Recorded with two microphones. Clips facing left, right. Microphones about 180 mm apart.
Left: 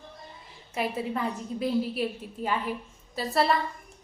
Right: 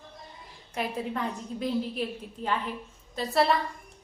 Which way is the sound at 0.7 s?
5° left (ahead or behind).